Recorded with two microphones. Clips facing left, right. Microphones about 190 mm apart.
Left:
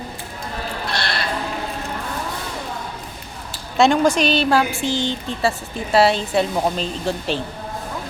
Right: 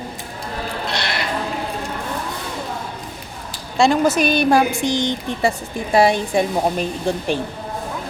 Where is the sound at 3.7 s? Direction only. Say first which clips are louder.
Even; centre (ahead or behind).